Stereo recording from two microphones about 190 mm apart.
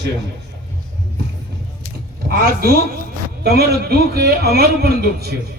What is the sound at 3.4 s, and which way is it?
A man's voice, 55° right (ahead or behind).